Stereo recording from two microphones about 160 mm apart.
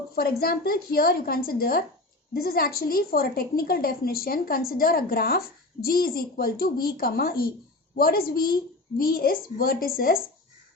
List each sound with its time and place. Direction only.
0.2 s a woman's voice: 75° left (ahead or behind)